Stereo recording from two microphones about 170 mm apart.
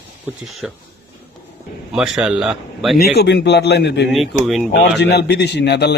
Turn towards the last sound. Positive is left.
turn(degrees=80)